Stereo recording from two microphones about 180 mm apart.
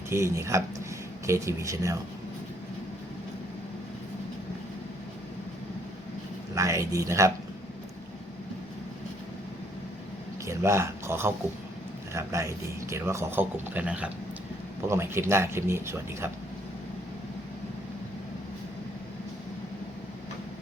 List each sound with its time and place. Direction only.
0.1 s a man's voice: 15° right (ahead or behind)
6.5 s a man's voice: 15° right (ahead or behind)
10.4 s a man's voice: 15° right (ahead or behind)